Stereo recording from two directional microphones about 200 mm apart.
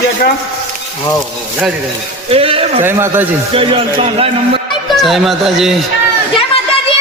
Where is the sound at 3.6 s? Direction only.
25° right (ahead or behind).